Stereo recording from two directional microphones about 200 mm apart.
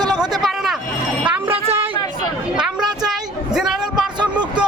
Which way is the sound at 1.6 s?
30° right (ahead or behind).